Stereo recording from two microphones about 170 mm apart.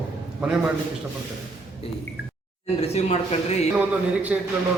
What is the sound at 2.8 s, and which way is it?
Speech, 40° left (ahead or behind).